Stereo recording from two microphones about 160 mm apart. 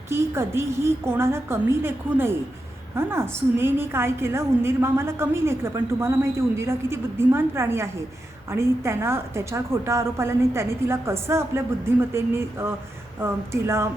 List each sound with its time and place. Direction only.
0.1 s a woman's voice: 15° right (ahead or behind)